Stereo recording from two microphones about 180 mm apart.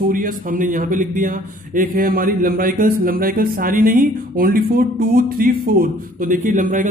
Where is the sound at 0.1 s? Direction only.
50° right (ahead or behind).